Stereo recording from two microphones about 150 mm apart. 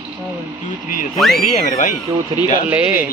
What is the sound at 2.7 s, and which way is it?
Speech, 10° right (ahead or behind).